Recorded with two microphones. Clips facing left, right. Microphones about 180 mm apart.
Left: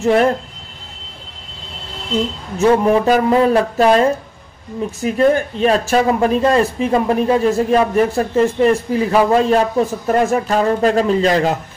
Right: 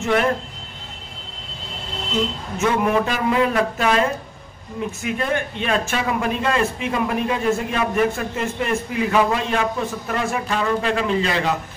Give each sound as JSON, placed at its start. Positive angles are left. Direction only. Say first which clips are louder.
{"t": 0.0, "sound": "a man's voice", "louder": "left 6 dB", "side_deg": 35}
{"t": 2.6, "sound": "a man's voice", "louder": "left 7 dB", "side_deg": 35}